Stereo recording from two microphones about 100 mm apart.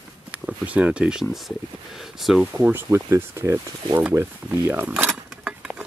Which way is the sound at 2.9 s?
25° right (ahead or behind).